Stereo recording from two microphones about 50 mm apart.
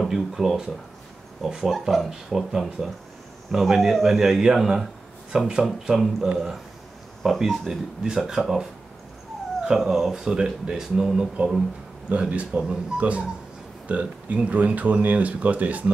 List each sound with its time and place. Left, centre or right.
0.1 s speech: centre
1.7 s speech: centre
7.2 s speech: centre
7.6 s speech: centre
9.8 s speech: centre
12.1 s speech: right